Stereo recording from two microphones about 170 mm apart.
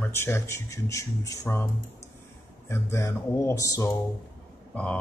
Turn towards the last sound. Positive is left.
turn(degrees=10)  # may be behind; listen again after turning